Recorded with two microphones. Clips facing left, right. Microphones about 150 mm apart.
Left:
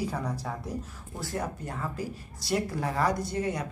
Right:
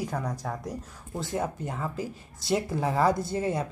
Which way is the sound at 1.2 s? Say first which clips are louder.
Right 3 dB; 20° right (ahead or behind).